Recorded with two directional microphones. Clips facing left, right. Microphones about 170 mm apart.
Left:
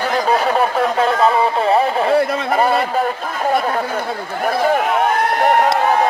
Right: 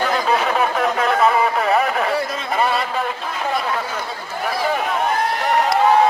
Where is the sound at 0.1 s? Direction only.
35° left (ahead or behind).